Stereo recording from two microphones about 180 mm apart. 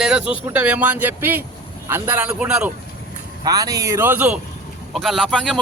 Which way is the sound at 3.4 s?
20° right (ahead or behind).